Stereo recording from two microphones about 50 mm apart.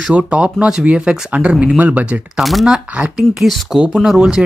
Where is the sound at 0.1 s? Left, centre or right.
Right.